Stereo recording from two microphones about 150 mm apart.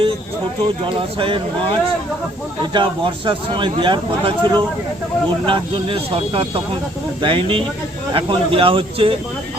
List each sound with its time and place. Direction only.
0.9 s speech: 35° right (ahead or behind)